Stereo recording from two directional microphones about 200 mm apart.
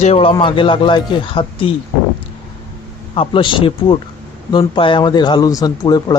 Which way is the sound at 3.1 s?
25° left (ahead or behind).